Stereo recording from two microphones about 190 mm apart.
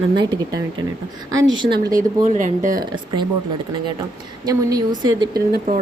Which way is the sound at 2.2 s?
45° right (ahead or behind).